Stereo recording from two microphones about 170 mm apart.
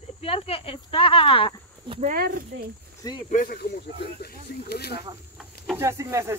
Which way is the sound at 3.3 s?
60° left (ahead or behind).